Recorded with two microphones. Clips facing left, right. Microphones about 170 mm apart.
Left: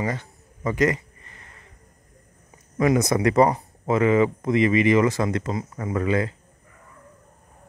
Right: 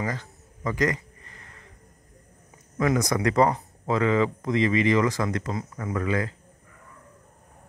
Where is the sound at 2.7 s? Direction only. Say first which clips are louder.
Left 4 dB; 20° left (ahead or behind).